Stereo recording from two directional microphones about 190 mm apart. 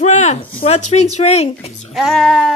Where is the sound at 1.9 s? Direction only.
Centre (ahead or behind).